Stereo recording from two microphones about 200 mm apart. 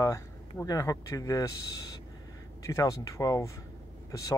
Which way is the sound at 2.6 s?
15° left (ahead or behind).